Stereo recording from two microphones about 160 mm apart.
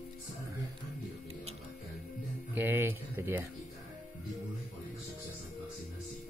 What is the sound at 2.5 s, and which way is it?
Speech, 15° right (ahead or behind).